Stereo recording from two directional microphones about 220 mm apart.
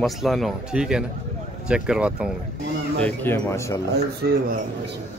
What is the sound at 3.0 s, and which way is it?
Speech, 10° left (ahead or behind).